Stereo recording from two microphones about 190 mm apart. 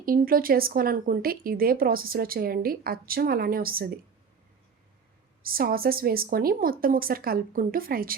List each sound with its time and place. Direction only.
0.0 s speech: 50° right (ahead or behind)
5.4 s speech: 50° right (ahead or behind)